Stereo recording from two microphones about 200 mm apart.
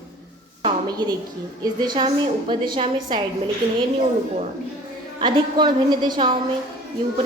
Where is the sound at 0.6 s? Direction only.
20° right (ahead or behind).